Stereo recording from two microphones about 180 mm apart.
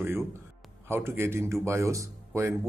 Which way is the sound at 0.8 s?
15° right (ahead or behind).